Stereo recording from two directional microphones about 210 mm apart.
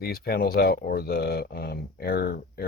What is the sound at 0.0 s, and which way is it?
Speech, 45° left (ahead or behind).